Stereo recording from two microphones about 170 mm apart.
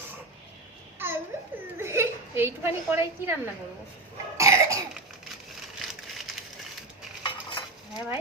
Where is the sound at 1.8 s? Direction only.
15° right (ahead or behind).